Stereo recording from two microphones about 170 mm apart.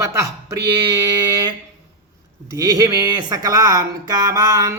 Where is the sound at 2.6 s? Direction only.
20° right (ahead or behind).